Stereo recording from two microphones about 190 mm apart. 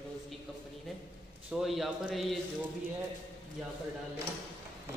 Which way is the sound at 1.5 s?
Centre (ahead or behind).